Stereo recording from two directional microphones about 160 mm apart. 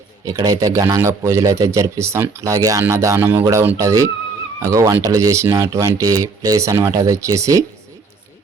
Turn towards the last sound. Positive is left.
turn(degrees=-20)  # may be behind; listen again after turning